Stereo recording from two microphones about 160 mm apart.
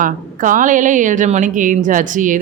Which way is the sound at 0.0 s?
55° right (ahead or behind).